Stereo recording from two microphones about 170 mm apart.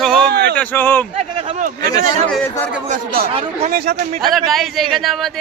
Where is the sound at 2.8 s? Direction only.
60° right (ahead or behind).